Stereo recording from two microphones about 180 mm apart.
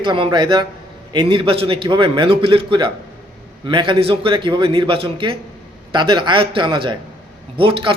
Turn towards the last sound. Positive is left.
turn(degrees=-30)  # may be behind; listen again after turning